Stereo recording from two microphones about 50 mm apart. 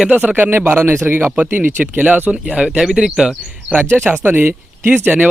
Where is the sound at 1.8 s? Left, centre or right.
Right.